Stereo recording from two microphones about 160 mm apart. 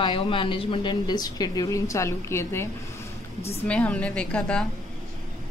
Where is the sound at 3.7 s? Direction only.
10° left (ahead or behind).